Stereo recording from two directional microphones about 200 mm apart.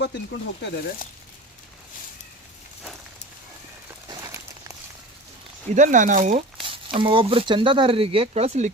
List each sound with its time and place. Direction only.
0.0 s speech: 60° left (ahead or behind)
4.1 s crumpling: 15° right (ahead or behind)
5.7 s speech: 40° right (ahead or behind)